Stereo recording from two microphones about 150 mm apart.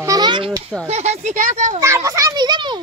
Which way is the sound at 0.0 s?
25° right (ahead or behind).